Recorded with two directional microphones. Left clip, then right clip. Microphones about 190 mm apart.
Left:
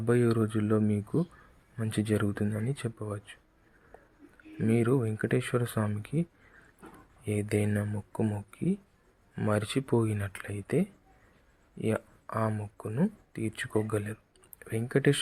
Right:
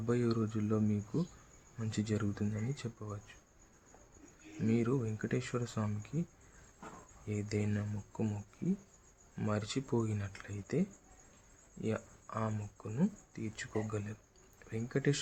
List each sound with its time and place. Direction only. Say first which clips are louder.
0.0 s speech: left 8 dB; 30° left (ahead or behind)
4.6 s speech: left 7 dB; 30° left (ahead or behind)
7.3 s speech: left 8 dB; 35° left (ahead or behind)